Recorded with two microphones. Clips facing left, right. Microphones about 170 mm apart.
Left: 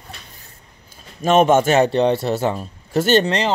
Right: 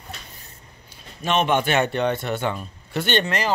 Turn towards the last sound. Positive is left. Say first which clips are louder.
# left 7 dB
turn(degrees=40)  # may be behind; listen again after turning